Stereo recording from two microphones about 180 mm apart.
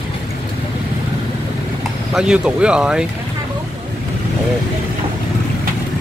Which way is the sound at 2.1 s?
5° right (ahead or behind).